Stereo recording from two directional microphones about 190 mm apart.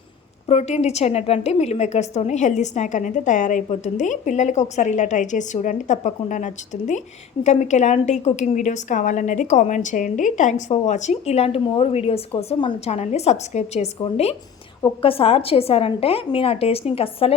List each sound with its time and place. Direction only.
0.4 s a woman's voice: 35° left (ahead or behind)